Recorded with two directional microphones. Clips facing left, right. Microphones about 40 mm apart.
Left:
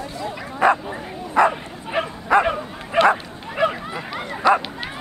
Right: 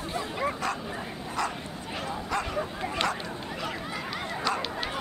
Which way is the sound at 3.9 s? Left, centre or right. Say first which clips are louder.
Left 4 dB; centre.